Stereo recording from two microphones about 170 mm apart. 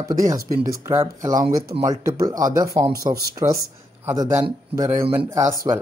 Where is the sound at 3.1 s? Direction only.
65° right (ahead or behind).